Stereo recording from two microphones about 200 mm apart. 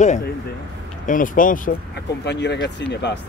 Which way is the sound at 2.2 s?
60° left (ahead or behind).